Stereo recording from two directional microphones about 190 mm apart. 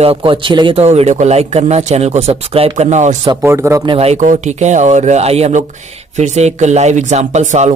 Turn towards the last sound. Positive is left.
turn(degrees=-40)  # may be behind; listen again after turning